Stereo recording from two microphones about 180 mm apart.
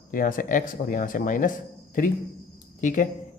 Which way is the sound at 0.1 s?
50° left (ahead or behind).